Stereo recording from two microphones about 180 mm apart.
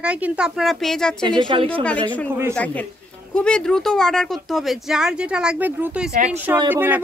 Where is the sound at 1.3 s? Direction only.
25° right (ahead or behind).